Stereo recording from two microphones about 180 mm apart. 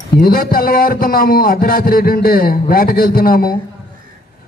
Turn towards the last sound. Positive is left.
turn(degrees=55)  # may be behind; listen again after turning